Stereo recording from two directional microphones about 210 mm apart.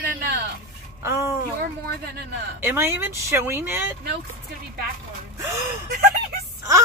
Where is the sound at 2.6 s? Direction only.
10° right (ahead or behind).